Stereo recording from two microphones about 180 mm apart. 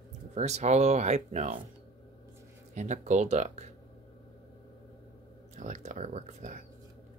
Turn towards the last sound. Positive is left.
turn(degrees=-45)  # may be behind; listen again after turning